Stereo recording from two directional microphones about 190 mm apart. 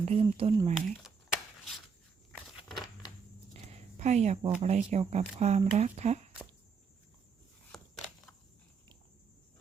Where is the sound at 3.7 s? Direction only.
35° right (ahead or behind).